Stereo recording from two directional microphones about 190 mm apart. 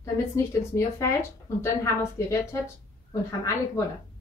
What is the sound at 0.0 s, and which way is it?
A woman's voice, 15° left (ahead or behind).